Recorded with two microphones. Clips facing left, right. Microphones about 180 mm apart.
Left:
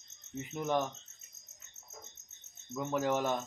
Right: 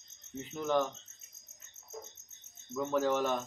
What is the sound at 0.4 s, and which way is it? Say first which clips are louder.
Cricket: right 2 dB; 15° left (ahead or behind).